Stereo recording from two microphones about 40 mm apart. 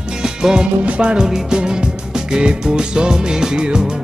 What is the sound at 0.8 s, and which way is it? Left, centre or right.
Music, right.